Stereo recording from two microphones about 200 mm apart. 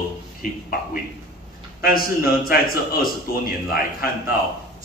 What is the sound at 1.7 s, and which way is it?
A man's voice, 45° left (ahead or behind).